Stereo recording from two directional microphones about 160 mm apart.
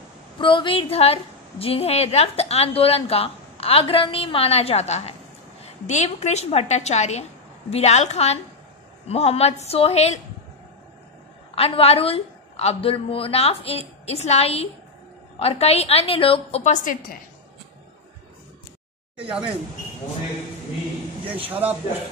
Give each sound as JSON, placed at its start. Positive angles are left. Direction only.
{"t": 0.4, "sound": "a woman's voice", "side_deg": 30}
{"t": 11.5, "sound": "a woman's voice", "side_deg": 35}
{"t": 21.3, "sound": "speech", "side_deg": -10}